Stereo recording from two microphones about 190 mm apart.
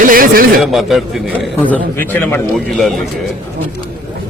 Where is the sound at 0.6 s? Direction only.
Centre (ahead or behind).